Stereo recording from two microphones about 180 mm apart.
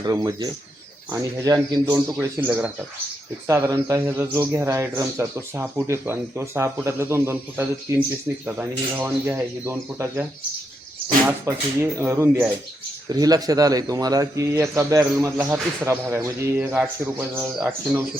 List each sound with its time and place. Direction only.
0.0 s speech: 20° right (ahead or behind)
11.3 s speech: 15° right (ahead or behind)